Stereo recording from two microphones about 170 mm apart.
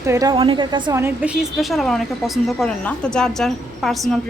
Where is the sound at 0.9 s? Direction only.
10° right (ahead or behind).